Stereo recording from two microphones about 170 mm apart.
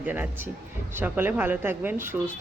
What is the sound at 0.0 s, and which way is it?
Speech, 10° right (ahead or behind).